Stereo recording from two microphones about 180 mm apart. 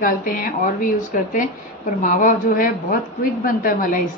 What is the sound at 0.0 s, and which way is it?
A woman's voice, 50° left (ahead or behind).